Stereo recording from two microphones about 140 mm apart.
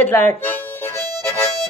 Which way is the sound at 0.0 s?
15° left (ahead or behind).